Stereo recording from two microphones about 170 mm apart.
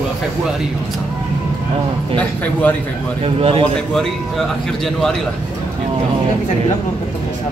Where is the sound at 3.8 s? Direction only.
Centre (ahead or behind).